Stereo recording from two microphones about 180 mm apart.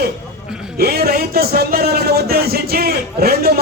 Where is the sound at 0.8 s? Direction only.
60° right (ahead or behind).